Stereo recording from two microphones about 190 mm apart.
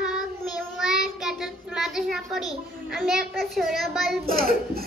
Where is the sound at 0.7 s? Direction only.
Centre (ahead or behind).